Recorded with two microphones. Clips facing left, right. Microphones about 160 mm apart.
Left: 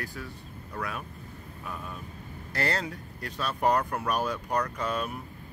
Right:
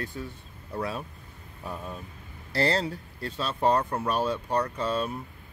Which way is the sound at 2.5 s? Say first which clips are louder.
Right 5 dB; 30° right (ahead or behind).